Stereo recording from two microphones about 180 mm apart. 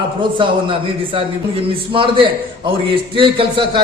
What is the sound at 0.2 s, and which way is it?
A man's voice, 30° right (ahead or behind).